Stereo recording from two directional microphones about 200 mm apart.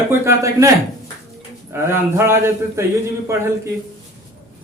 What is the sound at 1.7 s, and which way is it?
A man's voice, 10° right (ahead or behind).